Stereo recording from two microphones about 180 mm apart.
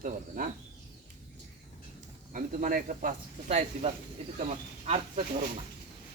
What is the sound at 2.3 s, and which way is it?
Speech, 50° right (ahead or behind).